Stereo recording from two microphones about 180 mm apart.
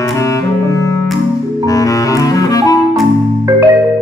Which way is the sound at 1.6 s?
20° left (ahead or behind).